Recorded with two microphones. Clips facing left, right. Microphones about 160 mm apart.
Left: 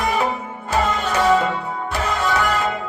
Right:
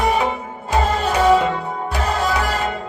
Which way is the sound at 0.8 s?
35° right (ahead or behind).